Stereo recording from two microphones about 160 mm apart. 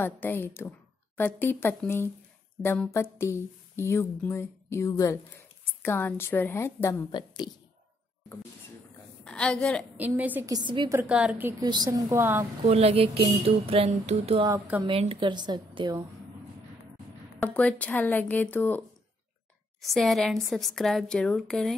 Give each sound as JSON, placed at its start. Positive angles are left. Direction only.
{"t": 0.0, "sound": "speech", "side_deg": 10}
{"t": 7.1, "sound": "a woman's voice", "side_deg": 25}
{"t": 9.2, "sound": "a woman's voice", "side_deg": 5}
{"t": 9.9, "sound": "a woman's voice", "side_deg": -10}
{"t": 10.4, "sound": "a woman's voice", "side_deg": -25}
{"t": 10.9, "sound": "a woman's voice", "side_deg": -10}
{"t": 11.6, "sound": "a woman's voice", "side_deg": -25}
{"t": 12.2, "sound": "a woman's voice", "side_deg": -15}
{"t": 12.6, "sound": "a woman's voice", "side_deg": -40}
{"t": 17.4, "sound": "speech", "side_deg": 10}
{"t": 19.8, "sound": "a woman's voice", "side_deg": 0}